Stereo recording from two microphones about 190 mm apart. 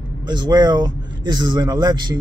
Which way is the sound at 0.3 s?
20° right (ahead or behind).